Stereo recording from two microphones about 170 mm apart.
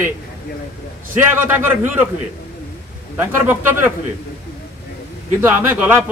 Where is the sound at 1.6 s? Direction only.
10° right (ahead or behind).